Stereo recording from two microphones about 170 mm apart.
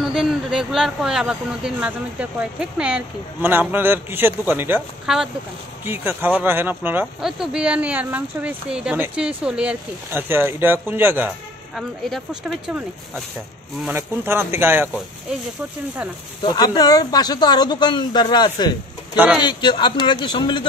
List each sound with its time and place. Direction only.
0.0 s speech: centre (ahead or behind)
13.9 s speech: 15° right (ahead or behind)
16.4 s speech: 25° left (ahead or behind)
19.1 s speech: 10° right (ahead or behind)
19.4 s speech: 25° left (ahead or behind)